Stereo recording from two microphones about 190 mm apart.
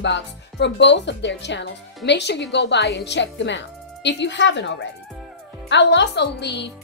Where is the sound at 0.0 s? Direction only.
65° left (ahead or behind).